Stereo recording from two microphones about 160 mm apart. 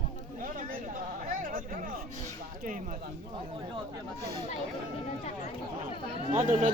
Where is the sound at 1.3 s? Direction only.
60° right (ahead or behind).